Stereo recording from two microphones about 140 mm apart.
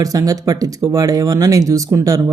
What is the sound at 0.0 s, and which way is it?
Speech, 25° right (ahead or behind).